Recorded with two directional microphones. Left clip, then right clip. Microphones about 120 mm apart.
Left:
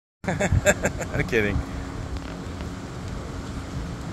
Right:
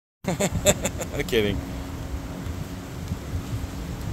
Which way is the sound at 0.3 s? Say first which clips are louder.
Left 1 dB; 35° right (ahead or behind).